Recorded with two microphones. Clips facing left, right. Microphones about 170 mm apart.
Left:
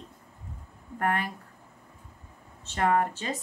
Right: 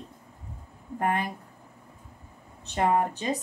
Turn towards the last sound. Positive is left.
turn(degrees=-15)  # may be behind; listen again after turning